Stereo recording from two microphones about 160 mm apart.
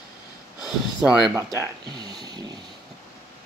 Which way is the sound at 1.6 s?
25° right (ahead or behind).